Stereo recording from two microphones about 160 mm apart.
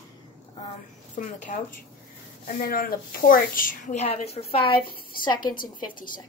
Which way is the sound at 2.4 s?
65° left (ahead or behind).